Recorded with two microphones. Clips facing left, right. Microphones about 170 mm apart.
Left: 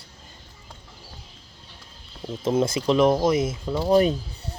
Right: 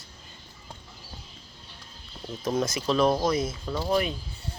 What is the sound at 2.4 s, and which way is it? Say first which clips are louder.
Speech: left 5 dB; 25° left (ahead or behind).